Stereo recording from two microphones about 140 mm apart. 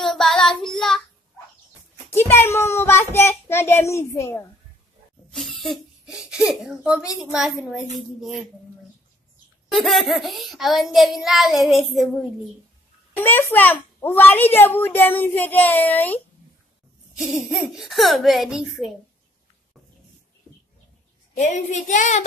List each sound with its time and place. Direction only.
0.0 s child singing: 5° left (ahead or behind)
2.0 s a sound: 15° left (ahead or behind)
5.3 s a sound: centre (ahead or behind)
6.1 s child singing: 5° right (ahead or behind)
7.2 s a woman's voice: 5° right (ahead or behind)
9.7 s child singing: centre (ahead or behind)
13.1 s a child's voice: 15° left (ahead or behind)
17.1 s child singing: 5° right (ahead or behind)
21.4 s speech: 55° left (ahead or behind)